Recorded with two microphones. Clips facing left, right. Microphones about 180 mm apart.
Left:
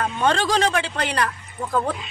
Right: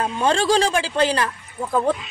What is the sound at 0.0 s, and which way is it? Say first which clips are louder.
Speech: right 1 dB; 30° right (ahead or behind).